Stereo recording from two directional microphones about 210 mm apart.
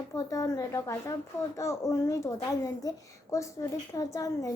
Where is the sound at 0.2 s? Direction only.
15° left (ahead or behind).